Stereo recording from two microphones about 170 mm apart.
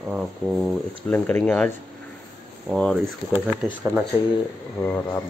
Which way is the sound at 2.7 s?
5° left (ahead or behind).